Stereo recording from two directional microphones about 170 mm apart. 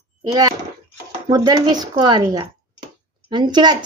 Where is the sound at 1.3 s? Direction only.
25° right (ahead or behind).